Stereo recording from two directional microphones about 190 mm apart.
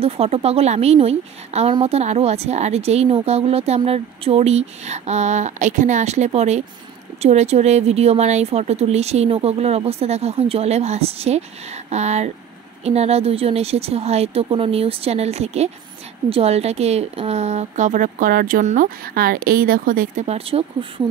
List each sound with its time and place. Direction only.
0.0 s a woman's voice: 35° right (ahead or behind)